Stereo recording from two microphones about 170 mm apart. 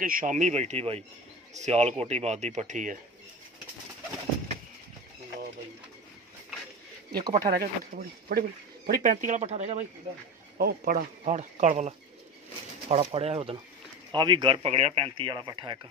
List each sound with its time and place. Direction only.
0.0 s speech: 55° right (ahead or behind)
7.1 s speech: 25° right (ahead or behind)
7.4 s speech: 60° right (ahead or behind)
9.1 s speech: 45° right (ahead or behind)
10.6 s speech: 55° right (ahead or behind); by 15.9 s 25° right (ahead or behind)